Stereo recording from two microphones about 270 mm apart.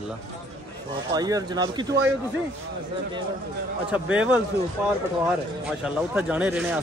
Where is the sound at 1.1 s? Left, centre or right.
Centre.